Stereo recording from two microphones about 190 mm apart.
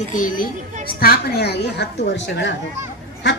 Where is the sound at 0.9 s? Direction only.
55° left (ahead or behind).